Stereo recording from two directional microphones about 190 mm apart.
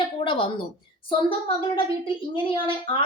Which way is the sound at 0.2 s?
25° left (ahead or behind).